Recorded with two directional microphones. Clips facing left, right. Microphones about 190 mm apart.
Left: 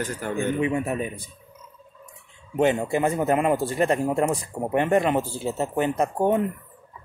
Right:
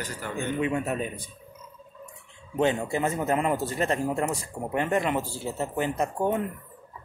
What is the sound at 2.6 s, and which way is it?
Speech, 15° left (ahead or behind).